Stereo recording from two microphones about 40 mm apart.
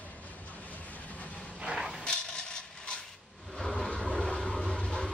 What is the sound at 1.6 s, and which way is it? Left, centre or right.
Vehicle, centre.